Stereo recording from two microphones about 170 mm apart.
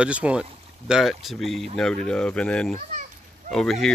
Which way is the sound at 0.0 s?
5° right (ahead or behind).